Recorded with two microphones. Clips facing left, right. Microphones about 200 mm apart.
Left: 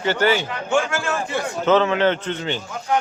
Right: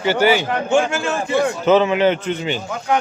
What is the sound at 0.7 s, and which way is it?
A man's voice, 20° right (ahead or behind).